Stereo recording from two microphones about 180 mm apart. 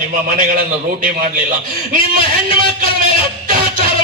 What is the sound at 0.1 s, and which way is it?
A man's voice, 50° right (ahead or behind).